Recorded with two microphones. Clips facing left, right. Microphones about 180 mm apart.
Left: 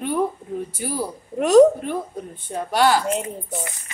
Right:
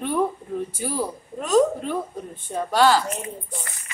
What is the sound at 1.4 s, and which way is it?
Speech, 70° left (ahead or behind).